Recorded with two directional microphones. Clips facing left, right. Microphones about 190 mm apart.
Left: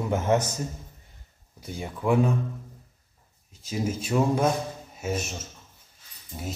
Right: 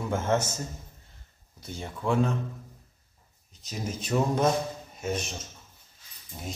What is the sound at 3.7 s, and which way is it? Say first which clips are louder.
A man's voice: left 3 dB; 5° left (ahead or behind).